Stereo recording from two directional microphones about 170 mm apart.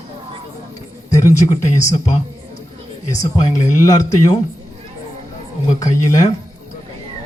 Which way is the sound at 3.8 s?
20° left (ahead or behind).